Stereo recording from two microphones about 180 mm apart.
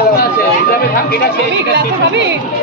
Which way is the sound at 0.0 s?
60° left (ahead or behind).